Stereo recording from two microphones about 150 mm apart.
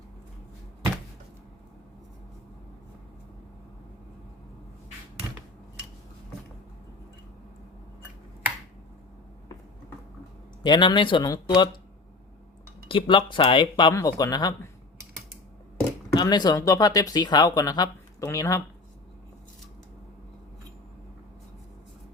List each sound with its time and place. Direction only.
10.6 s speech: 30° left (ahead or behind)
12.9 s speech: 35° left (ahead or behind)
16.1 s speech: 25° left (ahead or behind)